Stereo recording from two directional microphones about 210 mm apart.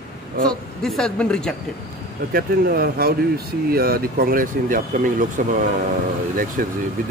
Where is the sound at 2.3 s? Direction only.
45° right (ahead or behind).